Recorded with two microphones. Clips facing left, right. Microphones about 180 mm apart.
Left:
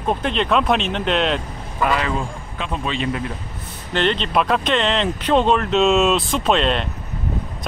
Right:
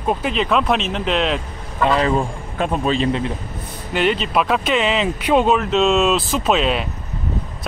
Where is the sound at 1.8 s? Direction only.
30° right (ahead or behind).